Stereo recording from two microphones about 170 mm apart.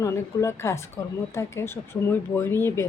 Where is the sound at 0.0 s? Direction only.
15° left (ahead or behind).